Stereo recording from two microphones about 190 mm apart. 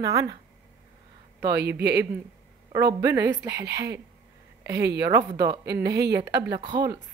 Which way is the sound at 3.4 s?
15° right (ahead or behind).